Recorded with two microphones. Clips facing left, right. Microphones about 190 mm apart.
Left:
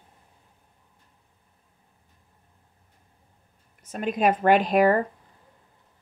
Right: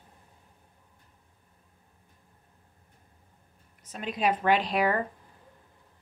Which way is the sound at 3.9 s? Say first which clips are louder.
Left 5 dB; 50° left (ahead or behind).